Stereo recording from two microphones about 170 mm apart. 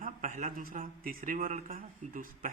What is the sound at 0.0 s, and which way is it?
Speech, 50° right (ahead or behind).